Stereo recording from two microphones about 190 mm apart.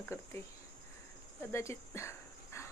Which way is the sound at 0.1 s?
15° left (ahead or behind).